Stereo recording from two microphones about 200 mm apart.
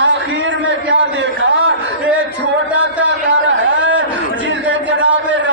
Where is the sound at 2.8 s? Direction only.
65° right (ahead or behind).